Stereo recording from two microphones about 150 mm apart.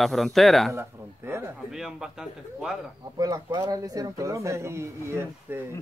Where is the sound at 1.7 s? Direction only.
5° right (ahead or behind).